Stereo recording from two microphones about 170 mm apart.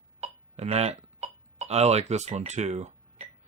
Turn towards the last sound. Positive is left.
turn(degrees=-40)  # may be behind; listen again after turning